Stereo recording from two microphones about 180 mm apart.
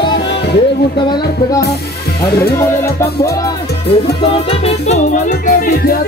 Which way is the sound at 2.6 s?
15° left (ahead or behind).